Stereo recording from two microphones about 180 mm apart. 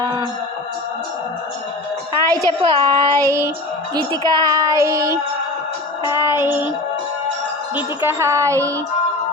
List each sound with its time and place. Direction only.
0.0 s a sound: 25° right (ahead or behind)
2.3 s a woman's voice: 30° right (ahead or behind)
6.1 s speech: 15° right (ahead or behind)
7.8 s speech: 15° right (ahead or behind)